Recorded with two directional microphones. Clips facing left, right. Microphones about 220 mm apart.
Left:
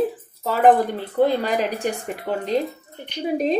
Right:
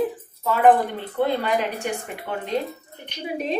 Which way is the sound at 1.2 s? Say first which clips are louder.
Left 3 dB; 35° left (ahead or behind).